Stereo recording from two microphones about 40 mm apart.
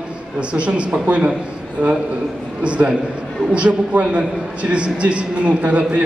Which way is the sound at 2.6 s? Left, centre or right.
Right.